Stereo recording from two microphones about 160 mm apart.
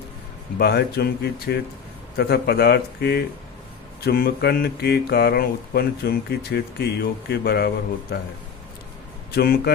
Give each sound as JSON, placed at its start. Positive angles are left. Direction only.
{"t": 0.6, "sound": "speech", "side_deg": 90}
{"t": 4.0, "sound": "speech", "side_deg": 75}
{"t": 9.3, "sound": "speech", "side_deg": 80}